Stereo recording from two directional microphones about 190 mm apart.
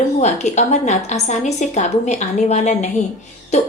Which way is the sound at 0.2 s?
35° left (ahead or behind).